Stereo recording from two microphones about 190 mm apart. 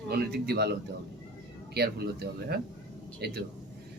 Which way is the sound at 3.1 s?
60° right (ahead or behind).